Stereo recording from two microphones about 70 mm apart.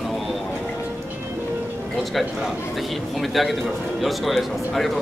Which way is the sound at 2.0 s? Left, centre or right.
Centre.